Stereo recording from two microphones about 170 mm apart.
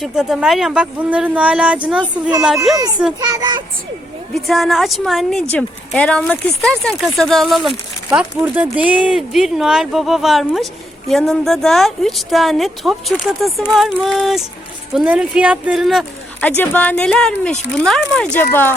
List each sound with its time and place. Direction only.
0.0 s speech: centre (ahead or behind)
3.2 s a child's voice: 20° right (ahead or behind)
4.4 s speech: centre (ahead or behind)